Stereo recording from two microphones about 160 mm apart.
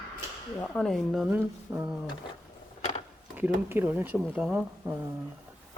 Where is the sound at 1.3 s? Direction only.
10° right (ahead or behind).